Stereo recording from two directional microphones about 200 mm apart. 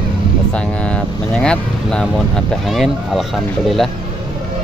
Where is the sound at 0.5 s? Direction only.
5° left (ahead or behind).